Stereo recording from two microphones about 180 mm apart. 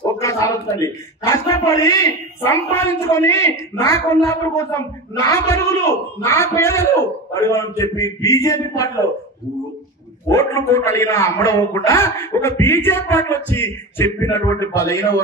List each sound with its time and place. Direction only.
0.2 s a man's voice: 15° left (ahead or behind)
3.0 s speech: 15° left (ahead or behind)
10.2 s speech: 15° left (ahead or behind)